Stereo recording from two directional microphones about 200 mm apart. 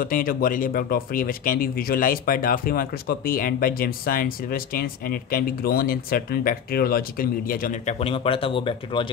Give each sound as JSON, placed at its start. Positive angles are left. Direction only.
{"t": 0.0, "sound": "speech", "side_deg": 45}
{"t": 8.0, "sound": "speech", "side_deg": 30}